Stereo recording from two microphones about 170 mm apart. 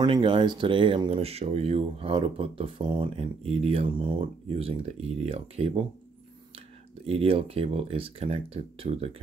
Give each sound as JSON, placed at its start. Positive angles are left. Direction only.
{"t": 0.0, "sound": "speech", "side_deg": -30}
{"t": 7.1, "sound": "speech", "side_deg": -35}